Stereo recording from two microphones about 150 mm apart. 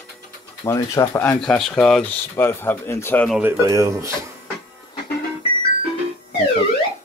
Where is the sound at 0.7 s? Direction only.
20° left (ahead or behind).